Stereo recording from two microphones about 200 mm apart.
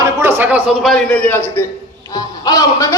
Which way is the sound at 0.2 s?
10° right (ahead or behind).